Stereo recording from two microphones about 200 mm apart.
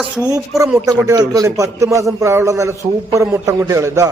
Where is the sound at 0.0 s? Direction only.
5° right (ahead or behind).